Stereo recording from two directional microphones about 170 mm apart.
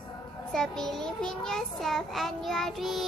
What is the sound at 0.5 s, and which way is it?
Child singing, 5° left (ahead or behind).